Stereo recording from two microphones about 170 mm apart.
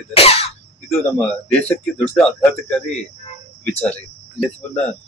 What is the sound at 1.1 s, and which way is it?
Speech, 10° left (ahead or behind).